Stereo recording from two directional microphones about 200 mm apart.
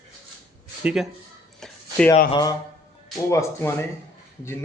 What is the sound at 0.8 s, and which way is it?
Speech, centre (ahead or behind).